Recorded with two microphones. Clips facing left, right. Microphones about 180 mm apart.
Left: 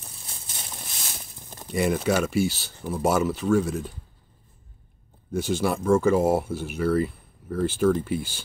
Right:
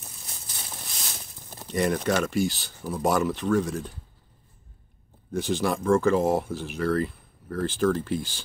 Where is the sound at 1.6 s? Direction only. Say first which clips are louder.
Left 1 dB; 5° left (ahead or behind).